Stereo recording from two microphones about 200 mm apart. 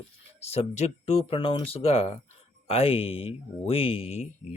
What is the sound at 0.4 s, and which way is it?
Speech, 30° left (ahead or behind).